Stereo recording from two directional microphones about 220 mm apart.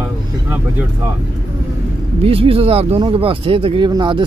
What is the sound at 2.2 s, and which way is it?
Speech, 25° right (ahead or behind).